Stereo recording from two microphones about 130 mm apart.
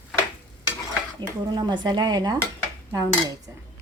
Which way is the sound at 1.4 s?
35° right (ahead or behind).